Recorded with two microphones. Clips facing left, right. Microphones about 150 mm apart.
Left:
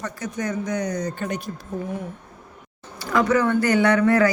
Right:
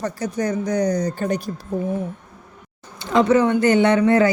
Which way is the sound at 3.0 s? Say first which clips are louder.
Right 4 dB; 25° right (ahead or behind).